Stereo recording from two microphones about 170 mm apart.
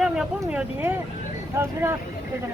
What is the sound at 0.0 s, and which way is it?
Speech, 5° right (ahead or behind).